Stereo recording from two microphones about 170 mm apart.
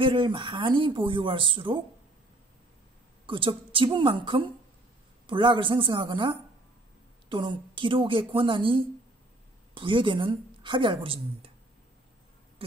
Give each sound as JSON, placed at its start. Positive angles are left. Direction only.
{"t": 0.0, "sound": "speech", "side_deg": -30}
{"t": 3.3, "sound": "speech", "side_deg": -30}